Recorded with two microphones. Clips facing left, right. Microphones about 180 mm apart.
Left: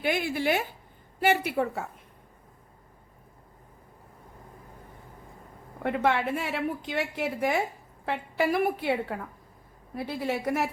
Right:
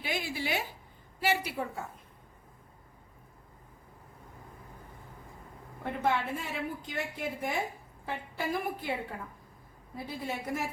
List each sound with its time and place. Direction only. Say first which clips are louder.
0.0 s a woman's voice: left 8 dB; 60° left (ahead or behind)
5.8 s a woman's voice: left 5 dB; 75° left (ahead or behind)